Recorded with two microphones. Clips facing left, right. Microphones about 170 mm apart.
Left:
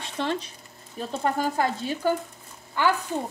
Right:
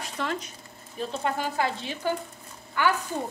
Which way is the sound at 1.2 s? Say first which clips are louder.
Left 4 dB; 45° left (ahead or behind).